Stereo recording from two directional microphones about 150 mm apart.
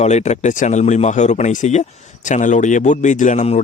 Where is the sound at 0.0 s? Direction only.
50° left (ahead or behind).